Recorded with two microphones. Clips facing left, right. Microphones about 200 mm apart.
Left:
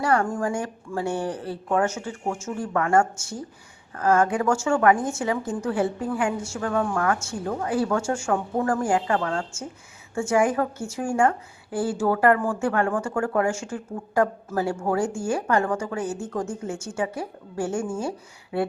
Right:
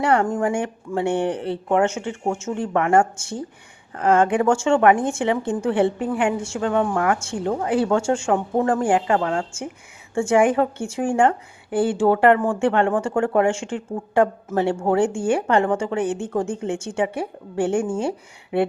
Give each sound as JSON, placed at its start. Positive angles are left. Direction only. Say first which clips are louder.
{"t": 0.0, "sound": "a woman's voice", "louder": "right 4 dB", "side_deg": -25}
{"t": 18.5, "sound": "a woman's voice", "louder": "right 5 dB", "side_deg": -20}